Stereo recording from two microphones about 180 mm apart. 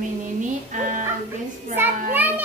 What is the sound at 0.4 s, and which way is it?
Music, 45° right (ahead or behind).